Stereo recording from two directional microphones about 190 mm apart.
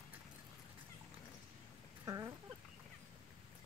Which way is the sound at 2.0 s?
20° right (ahead or behind).